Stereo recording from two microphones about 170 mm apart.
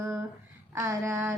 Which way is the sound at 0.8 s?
15° right (ahead or behind).